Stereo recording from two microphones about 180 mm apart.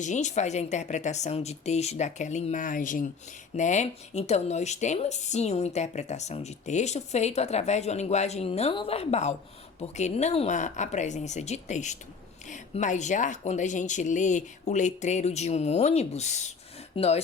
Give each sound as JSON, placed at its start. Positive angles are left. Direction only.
{"t": 0.0, "sound": "a woman's voice", "side_deg": 40}